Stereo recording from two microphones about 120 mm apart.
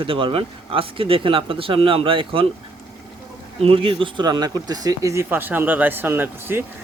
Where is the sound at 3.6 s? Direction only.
55° right (ahead or behind); by 6.6 s 20° right (ahead or behind).